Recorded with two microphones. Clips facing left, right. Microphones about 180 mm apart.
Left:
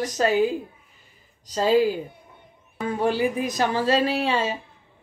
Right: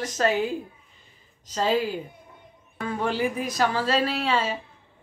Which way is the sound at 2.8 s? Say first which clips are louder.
Left 3 dB; 15° left (ahead or behind).